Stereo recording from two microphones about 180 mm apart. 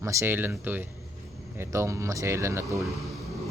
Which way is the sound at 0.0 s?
15° right (ahead or behind).